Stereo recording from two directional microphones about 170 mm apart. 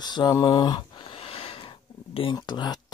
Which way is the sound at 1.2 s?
35° left (ahead or behind).